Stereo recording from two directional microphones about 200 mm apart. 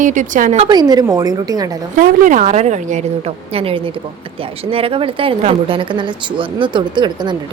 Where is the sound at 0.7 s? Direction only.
20° right (ahead or behind).